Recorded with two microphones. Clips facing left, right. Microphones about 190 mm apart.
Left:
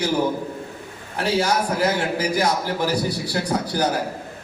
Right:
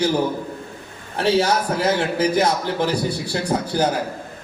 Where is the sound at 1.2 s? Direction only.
30° right (ahead or behind).